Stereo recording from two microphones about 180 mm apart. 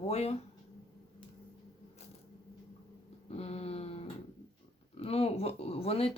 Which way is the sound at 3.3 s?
35° left (ahead or behind).